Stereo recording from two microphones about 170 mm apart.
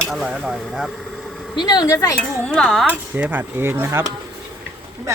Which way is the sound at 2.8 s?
10° right (ahead or behind).